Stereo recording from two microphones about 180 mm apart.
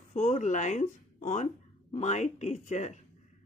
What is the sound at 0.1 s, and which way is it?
Speech, 40° left (ahead or behind).